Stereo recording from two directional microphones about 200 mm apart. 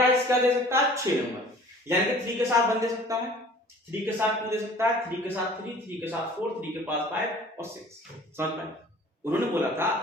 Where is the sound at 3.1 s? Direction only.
15° right (ahead or behind).